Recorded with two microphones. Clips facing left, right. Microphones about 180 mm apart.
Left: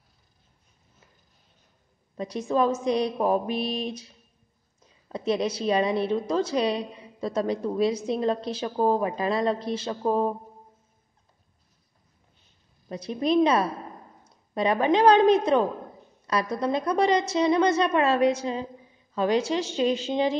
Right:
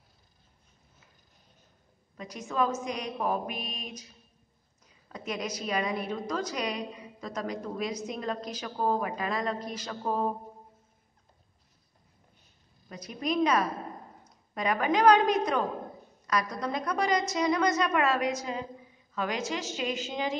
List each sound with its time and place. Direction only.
2.1 s speech: 30° left (ahead or behind)
5.1 s a woman's voice: 30° left (ahead or behind)
12.8 s a woman's voice: 30° left (ahead or behind)